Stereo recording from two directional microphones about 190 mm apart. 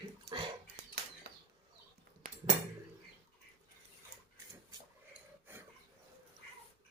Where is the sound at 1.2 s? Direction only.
60° right (ahead or behind).